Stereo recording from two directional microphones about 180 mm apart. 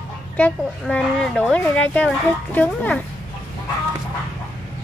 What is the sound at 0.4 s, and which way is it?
Speech, 5° left (ahead or behind).